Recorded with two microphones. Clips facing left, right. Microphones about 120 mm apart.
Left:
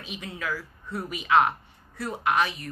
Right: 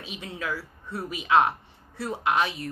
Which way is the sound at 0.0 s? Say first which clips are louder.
Even; 30° right (ahead or behind).